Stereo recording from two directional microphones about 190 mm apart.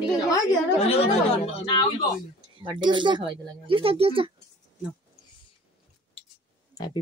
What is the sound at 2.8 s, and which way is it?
Speech, 25° right (ahead or behind).